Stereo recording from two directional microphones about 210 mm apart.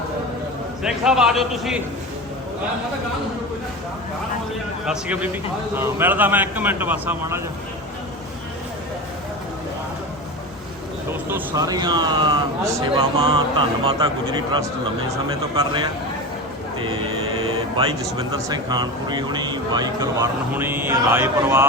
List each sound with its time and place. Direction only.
0.8 s a man's voice: centre (ahead or behind)
4.9 s speech: 5° right (ahead or behind)
11.3 s speech: 15° right (ahead or behind)
15.1 s speech: 20° right (ahead or behind)
17.7 s speech: 20° right (ahead or behind)